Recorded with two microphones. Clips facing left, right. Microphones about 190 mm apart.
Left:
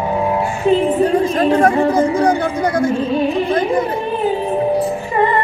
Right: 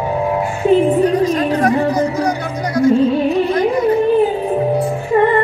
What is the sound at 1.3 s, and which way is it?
Speech, 50° left (ahead or behind).